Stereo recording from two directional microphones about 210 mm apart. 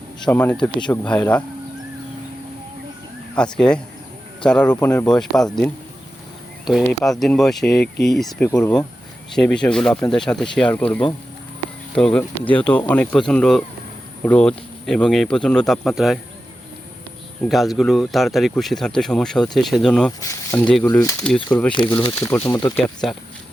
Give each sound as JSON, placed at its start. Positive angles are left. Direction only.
{"t": 0.2, "sound": "speech", "side_deg": 5}
{"t": 3.3, "sound": "speech", "side_deg": 5}
{"t": 17.4, "sound": "speech", "side_deg": 0}
{"t": 21.7, "sound": "speech", "side_deg": 25}